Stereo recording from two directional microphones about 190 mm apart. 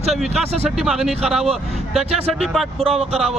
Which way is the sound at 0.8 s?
Centre (ahead or behind).